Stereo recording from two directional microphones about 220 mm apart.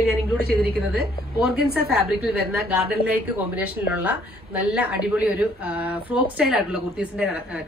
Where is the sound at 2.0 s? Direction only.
5° right (ahead or behind).